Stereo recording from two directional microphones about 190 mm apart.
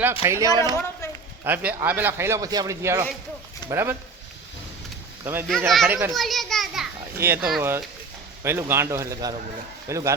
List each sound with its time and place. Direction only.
0.0 s speech: 10° right (ahead or behind)
0.7 s a woman's voice: 15° left (ahead or behind)
1.5 s speech: 10° right (ahead or behind)
5.2 s speech: 10° right (ahead or behind)
5.5 s speech: centre (ahead or behind)
6.1 s children playing: centre (ahead or behind)
7.2 s speech: 10° right (ahead or behind)